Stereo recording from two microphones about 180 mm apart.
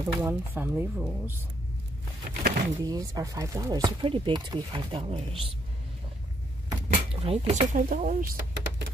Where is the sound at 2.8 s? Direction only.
20° right (ahead or behind).